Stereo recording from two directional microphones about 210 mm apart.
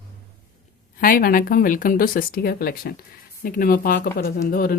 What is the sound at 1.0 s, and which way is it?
Speech, 45° left (ahead or behind).